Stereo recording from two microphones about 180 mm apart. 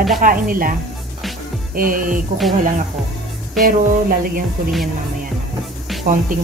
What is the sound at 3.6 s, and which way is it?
Speech, 55° right (ahead or behind).